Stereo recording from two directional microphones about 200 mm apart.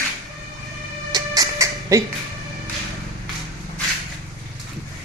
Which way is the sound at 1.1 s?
20° right (ahead or behind).